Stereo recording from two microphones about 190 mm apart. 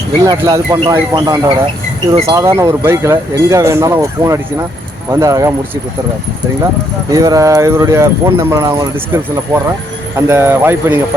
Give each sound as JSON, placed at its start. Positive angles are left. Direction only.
{"t": 0.3, "sound": "speech", "side_deg": -15}
{"t": 2.4, "sound": "speech", "side_deg": -15}
{"t": 7.1, "sound": "speech", "side_deg": -20}